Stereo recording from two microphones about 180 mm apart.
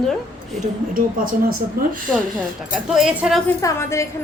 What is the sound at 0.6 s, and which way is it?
Speech, 50° right (ahead or behind).